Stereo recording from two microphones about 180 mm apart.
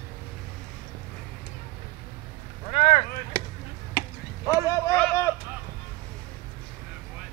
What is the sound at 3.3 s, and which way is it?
Basketball bounce, 15° right (ahead or behind).